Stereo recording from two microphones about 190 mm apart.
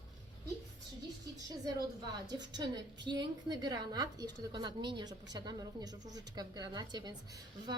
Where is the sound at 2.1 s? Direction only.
20° right (ahead or behind).